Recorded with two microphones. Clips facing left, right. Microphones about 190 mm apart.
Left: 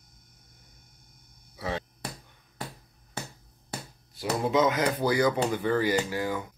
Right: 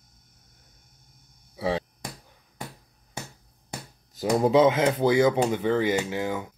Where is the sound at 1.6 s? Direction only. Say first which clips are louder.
Right 6 dB; 30° right (ahead or behind).